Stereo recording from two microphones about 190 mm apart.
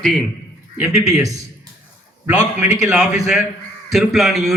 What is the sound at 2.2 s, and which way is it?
A man's voice, 5° right (ahead or behind).